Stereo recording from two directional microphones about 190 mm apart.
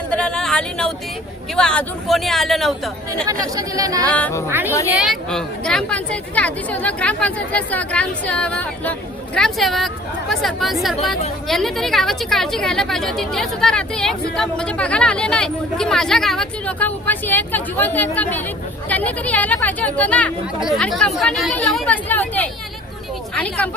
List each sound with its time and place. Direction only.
0.1 s a sound: 5° left (ahead or behind)
1.5 s a woman's voice: 5° left (ahead or behind)
3.4 s speech: 20° right (ahead or behind)
4.0 s speech: 5° left (ahead or behind)
4.4 s a woman's voice: 10° right (ahead or behind); by 22.4 s 10° left (ahead or behind)